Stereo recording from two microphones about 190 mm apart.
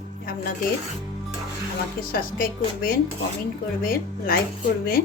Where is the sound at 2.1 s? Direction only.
50° left (ahead or behind).